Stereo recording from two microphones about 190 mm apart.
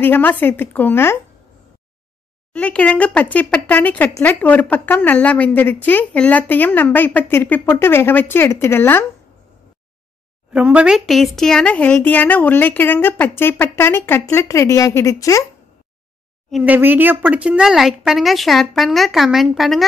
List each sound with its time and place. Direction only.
0.0 s speech: 10° left (ahead or behind)
2.5 s speech: 5° left (ahead or behind)
10.5 s speech: 5° right (ahead or behind); by 15.4 s 15° left (ahead or behind)
16.4 s speech: 5° right (ahead or behind)